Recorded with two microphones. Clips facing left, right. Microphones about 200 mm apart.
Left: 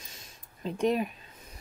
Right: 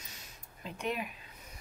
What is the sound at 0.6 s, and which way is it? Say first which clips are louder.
Speech: left 9 dB; 35° left (ahead or behind).